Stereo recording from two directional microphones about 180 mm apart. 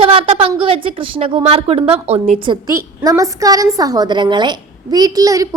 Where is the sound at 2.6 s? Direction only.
15° right (ahead or behind).